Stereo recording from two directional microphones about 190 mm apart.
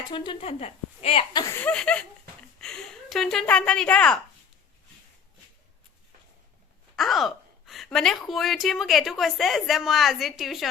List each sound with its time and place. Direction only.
0.1 s a woman's voice: 30° left (ahead or behind)
1.5 s a woman's voice: 5° left (ahead or behind)
6.9 s a woman's voice: centre (ahead or behind)